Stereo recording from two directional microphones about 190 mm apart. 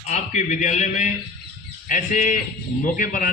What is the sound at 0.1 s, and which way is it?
A man's voice, 40° left (ahead or behind).